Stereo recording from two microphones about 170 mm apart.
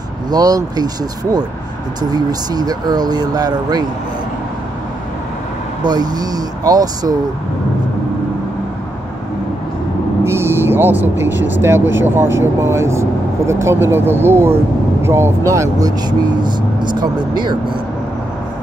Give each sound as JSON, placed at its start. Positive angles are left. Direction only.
{"t": 0.3, "sound": "speech", "side_deg": -20}
{"t": 2.0, "sound": "speech", "side_deg": -25}
{"t": 5.9, "sound": "speech", "side_deg": -25}
{"t": 10.2, "sound": "vehicle", "side_deg": -15}
{"t": 11.6, "sound": "speech", "side_deg": -15}